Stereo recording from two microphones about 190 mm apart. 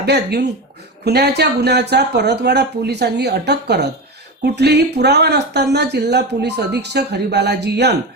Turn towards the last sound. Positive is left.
turn(degrees=-60)  # may be behind; listen again after turning